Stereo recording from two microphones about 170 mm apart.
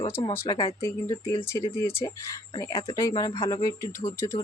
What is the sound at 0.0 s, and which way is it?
Speech, 30° left (ahead or behind).